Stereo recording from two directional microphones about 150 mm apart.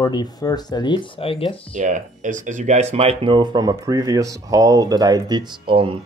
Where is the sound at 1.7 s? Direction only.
55° right (ahead or behind).